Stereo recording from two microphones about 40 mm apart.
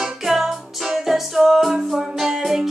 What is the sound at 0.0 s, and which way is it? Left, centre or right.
Music, centre.